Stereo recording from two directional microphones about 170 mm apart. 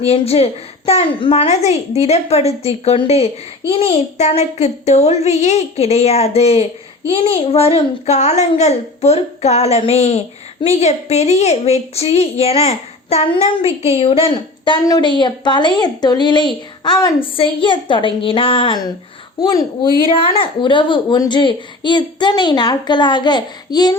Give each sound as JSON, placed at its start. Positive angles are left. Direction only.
{"t": 0.0, "sound": "a child's voice", "side_deg": 35}